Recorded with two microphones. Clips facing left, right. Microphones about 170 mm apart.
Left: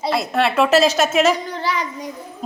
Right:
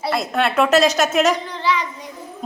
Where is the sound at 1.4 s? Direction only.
40° left (ahead or behind).